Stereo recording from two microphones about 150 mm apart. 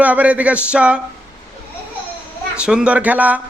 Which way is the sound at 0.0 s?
10° right (ahead or behind).